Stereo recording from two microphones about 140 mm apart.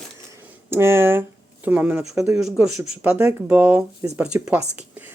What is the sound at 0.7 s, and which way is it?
Speech, 15° right (ahead or behind).